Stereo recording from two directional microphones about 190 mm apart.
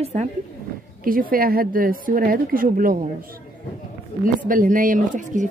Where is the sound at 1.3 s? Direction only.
50° right (ahead or behind).